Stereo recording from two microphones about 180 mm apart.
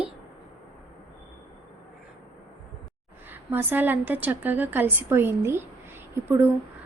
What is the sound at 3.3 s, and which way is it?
A woman's voice, 10° right (ahead or behind).